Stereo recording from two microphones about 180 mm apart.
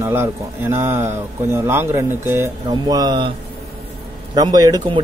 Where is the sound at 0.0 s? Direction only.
15° right (ahead or behind).